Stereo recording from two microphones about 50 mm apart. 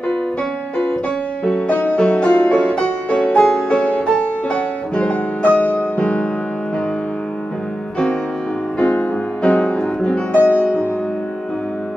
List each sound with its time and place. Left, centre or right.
1.7 s music: left; by 3.6 s centre
3.6 s music: left
5.9 s music: left
8.9 s music: left
10.3 s music: left